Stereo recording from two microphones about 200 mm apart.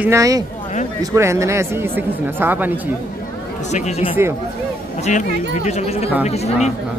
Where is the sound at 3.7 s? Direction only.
35° left (ahead or behind).